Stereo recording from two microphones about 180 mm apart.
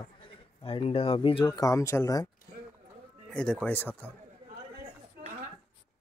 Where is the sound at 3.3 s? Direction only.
5° left (ahead or behind).